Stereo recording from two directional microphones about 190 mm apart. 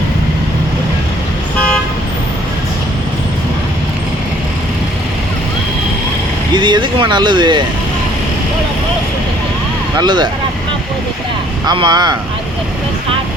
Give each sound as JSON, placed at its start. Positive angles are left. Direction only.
{"t": 6.5, "sound": "speech", "side_deg": -25}
{"t": 10.0, "sound": "speech", "side_deg": -25}
{"t": 11.6, "sound": "speech", "side_deg": -20}